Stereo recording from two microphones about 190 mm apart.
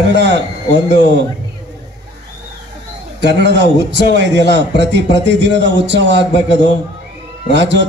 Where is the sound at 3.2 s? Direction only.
65° right (ahead or behind).